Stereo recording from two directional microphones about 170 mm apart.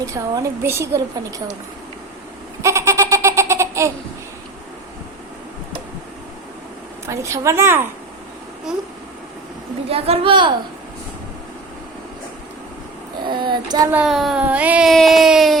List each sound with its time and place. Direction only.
0.0 s a woman's voice: 20° right (ahead or behind)
2.6 s baby laughter: 15° right (ahead or behind)
7.1 s a woman's voice: 15° right (ahead or behind)
9.9 s speech: 35° right (ahead or behind)
13.2 s speech: 25° right (ahead or behind)
13.9 s speech: centre (ahead or behind)